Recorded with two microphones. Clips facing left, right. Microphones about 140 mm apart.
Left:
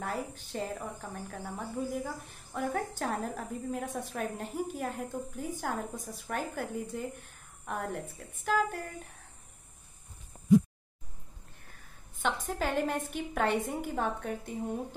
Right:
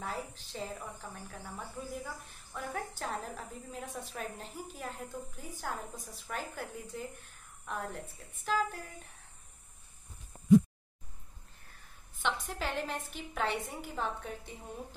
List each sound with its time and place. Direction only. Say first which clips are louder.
0.0 s a woman's voice: left 4 dB; 55° left (ahead or behind)
12.2 s a woman's voice: left 3 dB; 45° left (ahead or behind)